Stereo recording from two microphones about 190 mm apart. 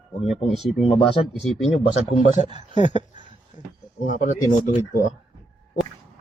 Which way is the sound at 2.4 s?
40° left (ahead or behind).